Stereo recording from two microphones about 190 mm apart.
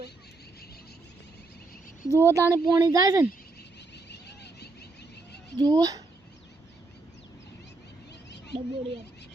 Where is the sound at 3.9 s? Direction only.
60° left (ahead or behind).